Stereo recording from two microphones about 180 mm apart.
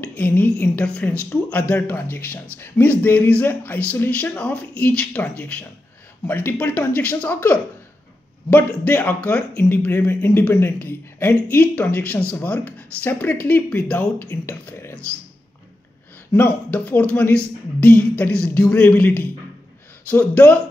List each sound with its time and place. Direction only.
0.0 s a woman's voice: 10° left (ahead or behind)
8.8 s speech: 10° left (ahead or behind)
16.3 s speech: 10° left (ahead or behind)